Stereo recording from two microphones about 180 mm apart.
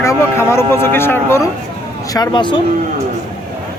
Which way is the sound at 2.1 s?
25° left (ahead or behind).